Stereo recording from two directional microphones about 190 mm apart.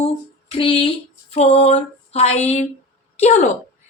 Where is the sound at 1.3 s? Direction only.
30° left (ahead or behind).